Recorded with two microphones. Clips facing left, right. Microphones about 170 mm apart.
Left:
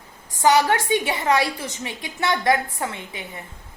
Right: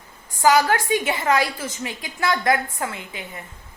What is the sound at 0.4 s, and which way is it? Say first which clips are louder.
A woman's voice: even; 25° left (ahead or behind).